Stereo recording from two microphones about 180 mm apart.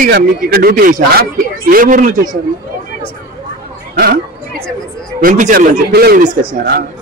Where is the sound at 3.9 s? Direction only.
55° right (ahead or behind).